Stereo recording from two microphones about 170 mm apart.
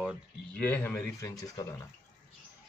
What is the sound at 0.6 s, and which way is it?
Speech, 10° left (ahead or behind).